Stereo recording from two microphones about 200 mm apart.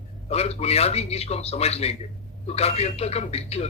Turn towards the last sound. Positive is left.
turn(degrees=30)  # may be behind; listen again after turning